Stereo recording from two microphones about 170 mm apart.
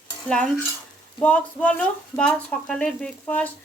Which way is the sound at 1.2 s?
10° left (ahead or behind).